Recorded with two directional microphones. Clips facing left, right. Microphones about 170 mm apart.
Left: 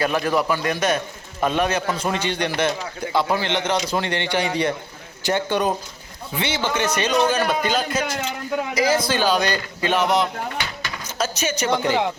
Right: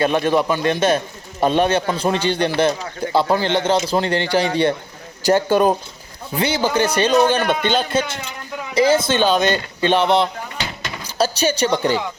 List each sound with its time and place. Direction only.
0.0 s a man's voice: 25° right (ahead or behind)